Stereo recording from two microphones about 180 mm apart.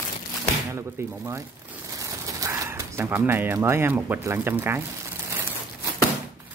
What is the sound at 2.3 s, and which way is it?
Speech, 15° right (ahead or behind).